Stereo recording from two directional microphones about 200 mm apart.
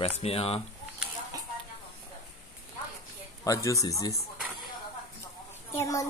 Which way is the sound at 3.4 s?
15° left (ahead or behind).